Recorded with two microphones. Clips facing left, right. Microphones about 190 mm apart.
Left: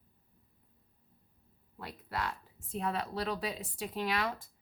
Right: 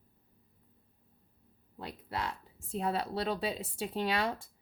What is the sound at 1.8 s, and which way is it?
A woman's voice, 25° right (ahead or behind).